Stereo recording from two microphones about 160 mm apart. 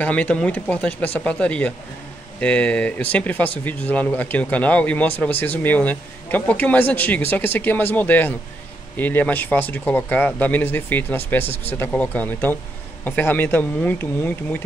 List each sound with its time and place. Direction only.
0.0 s speech: 10° left (ahead or behind)